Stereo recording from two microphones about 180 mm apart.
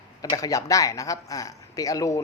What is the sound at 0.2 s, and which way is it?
Speech, 20° left (ahead or behind).